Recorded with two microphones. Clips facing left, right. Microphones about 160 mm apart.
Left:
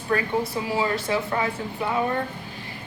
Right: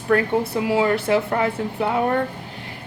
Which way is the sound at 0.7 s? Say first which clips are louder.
Right 7 dB; 60° right (ahead or behind).